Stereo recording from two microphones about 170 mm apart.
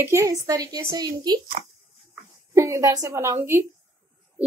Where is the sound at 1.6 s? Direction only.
40° right (ahead or behind).